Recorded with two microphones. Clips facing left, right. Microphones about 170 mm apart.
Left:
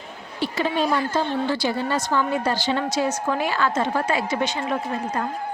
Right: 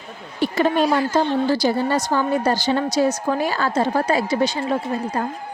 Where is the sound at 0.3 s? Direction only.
50° right (ahead or behind); by 5.2 s 35° right (ahead or behind).